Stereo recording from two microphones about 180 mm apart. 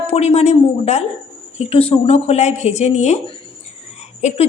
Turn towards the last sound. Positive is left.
turn(degrees=40)  # may be behind; listen again after turning